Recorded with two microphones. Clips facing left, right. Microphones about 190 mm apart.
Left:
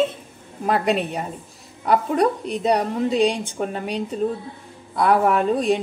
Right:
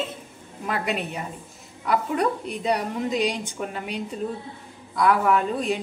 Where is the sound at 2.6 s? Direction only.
35° left (ahead or behind).